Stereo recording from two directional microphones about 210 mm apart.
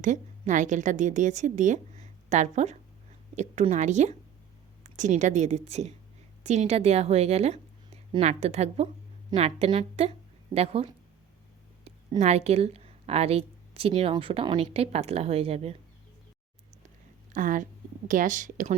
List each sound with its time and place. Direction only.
0.0 s a woman's voice: 35° right (ahead or behind)
11.9 s a woman's voice: 30° right (ahead or behind)
17.3 s a woman's voice: 40° right (ahead or behind)